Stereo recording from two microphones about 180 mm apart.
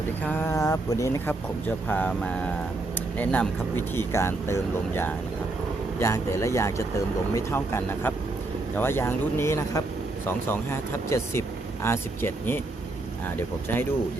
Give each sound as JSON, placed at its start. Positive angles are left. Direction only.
{"t": 0.3, "sound": "speech", "side_deg": 10}